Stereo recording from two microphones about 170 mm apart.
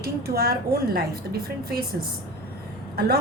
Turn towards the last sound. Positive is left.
turn(degrees=-70)  # may be behind; listen again after turning